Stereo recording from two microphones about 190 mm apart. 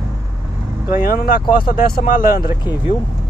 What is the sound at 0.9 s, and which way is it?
Speech, 50° left (ahead or behind).